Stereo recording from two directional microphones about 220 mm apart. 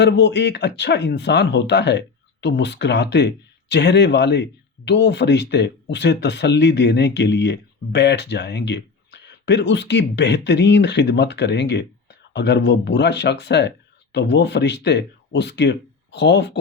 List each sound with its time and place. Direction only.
0.0 s speech: 50° left (ahead or behind)